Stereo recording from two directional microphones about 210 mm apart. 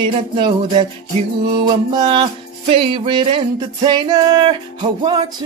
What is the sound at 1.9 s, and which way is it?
Speech, 20° right (ahead or behind).